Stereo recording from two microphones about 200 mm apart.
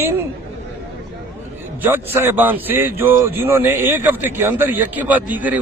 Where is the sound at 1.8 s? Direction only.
10° right (ahead or behind).